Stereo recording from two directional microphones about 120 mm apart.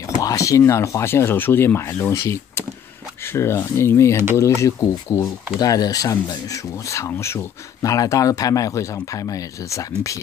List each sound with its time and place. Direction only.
0.2 s speech: 25° left (ahead or behind)